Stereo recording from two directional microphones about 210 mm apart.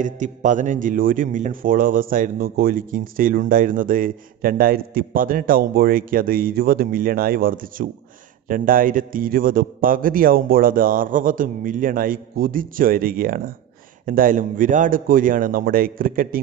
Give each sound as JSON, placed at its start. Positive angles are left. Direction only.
{"t": 0.0, "sound": "a man's voice", "side_deg": -35}